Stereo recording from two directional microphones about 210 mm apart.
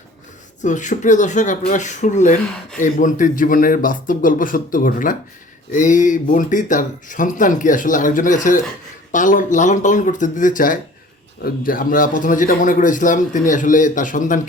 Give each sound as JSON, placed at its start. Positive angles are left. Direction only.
{"t": 0.6, "sound": "speech", "side_deg": 35}